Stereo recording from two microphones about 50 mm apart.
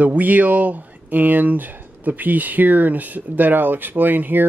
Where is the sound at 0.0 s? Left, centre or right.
Right.